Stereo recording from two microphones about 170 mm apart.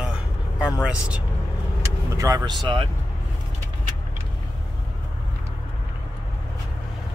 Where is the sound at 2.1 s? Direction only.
20° right (ahead or behind).